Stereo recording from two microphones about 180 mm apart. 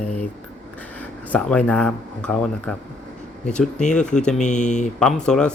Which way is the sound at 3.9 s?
5° left (ahead or behind).